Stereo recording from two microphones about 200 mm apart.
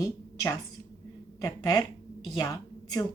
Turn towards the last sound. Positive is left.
turn(degrees=20)  # may be behind; listen again after turning